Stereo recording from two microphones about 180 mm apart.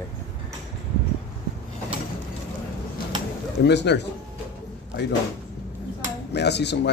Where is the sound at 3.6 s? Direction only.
70° left (ahead or behind).